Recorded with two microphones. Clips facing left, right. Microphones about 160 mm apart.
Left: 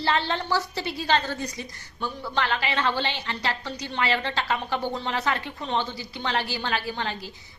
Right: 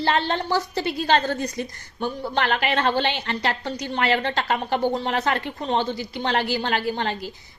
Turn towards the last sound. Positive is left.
turn(degrees=-45)  # may be behind; listen again after turning